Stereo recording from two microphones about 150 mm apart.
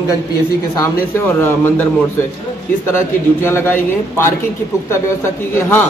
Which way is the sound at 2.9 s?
15° left (ahead or behind).